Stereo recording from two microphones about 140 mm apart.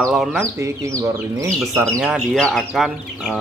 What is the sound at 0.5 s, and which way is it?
Speech, 20° right (ahead or behind).